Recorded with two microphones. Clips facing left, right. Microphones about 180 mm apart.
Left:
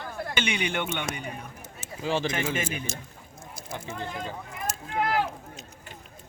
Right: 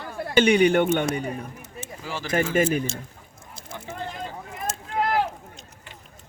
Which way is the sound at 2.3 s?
40° right (ahead or behind).